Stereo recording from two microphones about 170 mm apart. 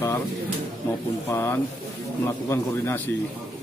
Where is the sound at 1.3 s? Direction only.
15° left (ahead or behind).